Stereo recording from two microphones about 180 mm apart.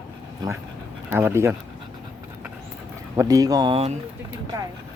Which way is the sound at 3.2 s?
20° right (ahead or behind).